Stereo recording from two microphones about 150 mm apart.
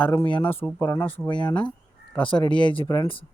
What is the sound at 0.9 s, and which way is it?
Speech, 15° left (ahead or behind).